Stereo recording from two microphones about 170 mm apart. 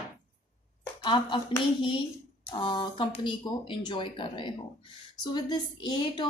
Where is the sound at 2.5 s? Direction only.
30° left (ahead or behind).